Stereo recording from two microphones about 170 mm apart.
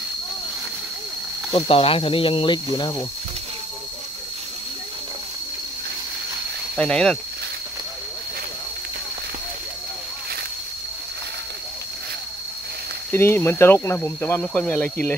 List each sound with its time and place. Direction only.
1.5 s speech: 35° left (ahead or behind)
6.8 s speech: 5° left (ahead or behind)
13.1 s speech: 15° left (ahead or behind)